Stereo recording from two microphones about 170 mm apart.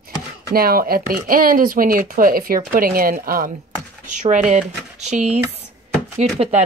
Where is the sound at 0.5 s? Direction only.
60° right (ahead or behind).